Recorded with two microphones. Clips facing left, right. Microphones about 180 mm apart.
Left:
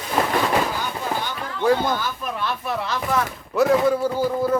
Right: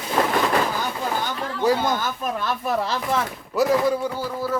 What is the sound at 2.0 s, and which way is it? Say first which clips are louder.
Speech: right 1 dB; 45° right (ahead or behind).